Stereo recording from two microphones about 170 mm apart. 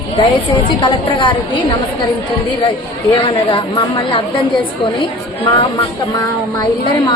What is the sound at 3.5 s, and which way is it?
Speech, 30° left (ahead or behind).